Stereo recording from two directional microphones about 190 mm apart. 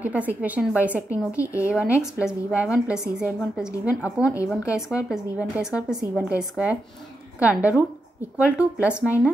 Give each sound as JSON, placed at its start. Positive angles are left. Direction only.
{"t": 0.0, "sound": "a woman's voice", "side_deg": -10}
{"t": 1.3, "sound": "speech", "side_deg": 15}
{"t": 1.7, "sound": "a woman's voice", "side_deg": -5}